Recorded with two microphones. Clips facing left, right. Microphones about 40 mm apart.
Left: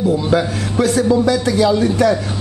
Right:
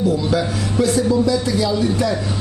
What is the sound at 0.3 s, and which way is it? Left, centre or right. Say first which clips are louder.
Speech: left 6 dB; left.